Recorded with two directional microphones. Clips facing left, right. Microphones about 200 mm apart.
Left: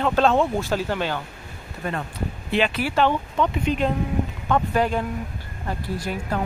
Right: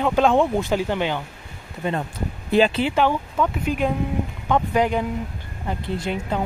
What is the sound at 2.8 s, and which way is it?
Speech, 15° right (ahead or behind).